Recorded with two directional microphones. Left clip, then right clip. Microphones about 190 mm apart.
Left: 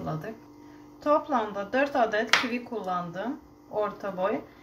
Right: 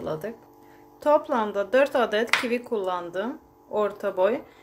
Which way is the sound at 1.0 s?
60° right (ahead or behind).